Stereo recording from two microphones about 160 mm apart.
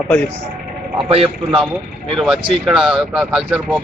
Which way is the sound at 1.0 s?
35° right (ahead or behind).